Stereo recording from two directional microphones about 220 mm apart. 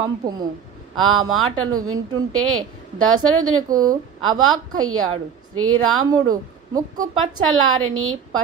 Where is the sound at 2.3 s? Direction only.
70° right (ahead or behind).